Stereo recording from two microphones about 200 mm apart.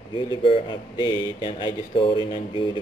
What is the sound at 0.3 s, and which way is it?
Speech, 25° left (ahead or behind).